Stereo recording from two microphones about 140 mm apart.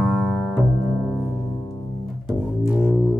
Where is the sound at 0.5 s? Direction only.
Centre (ahead or behind).